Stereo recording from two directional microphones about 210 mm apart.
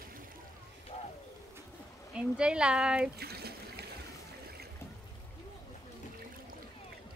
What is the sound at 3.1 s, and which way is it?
Water, 50° right (ahead or behind).